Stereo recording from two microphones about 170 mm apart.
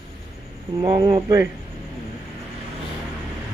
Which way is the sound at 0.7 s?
25° right (ahead or behind).